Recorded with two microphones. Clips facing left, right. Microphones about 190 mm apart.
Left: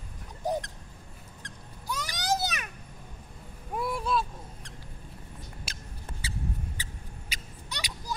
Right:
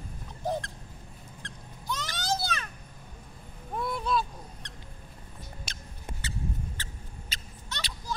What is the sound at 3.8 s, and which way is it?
Goose, 5° left (ahead or behind).